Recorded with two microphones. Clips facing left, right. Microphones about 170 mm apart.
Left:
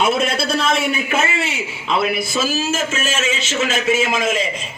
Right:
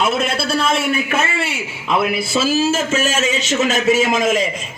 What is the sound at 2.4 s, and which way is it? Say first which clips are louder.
A man's voice: right 5 dB; 35° right (ahead or behind).